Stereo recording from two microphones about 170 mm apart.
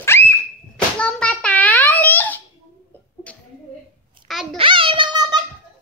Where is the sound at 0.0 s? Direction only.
15° left (ahead or behind).